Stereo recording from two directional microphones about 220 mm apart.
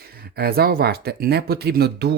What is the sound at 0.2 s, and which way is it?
Speech, 45° right (ahead or behind).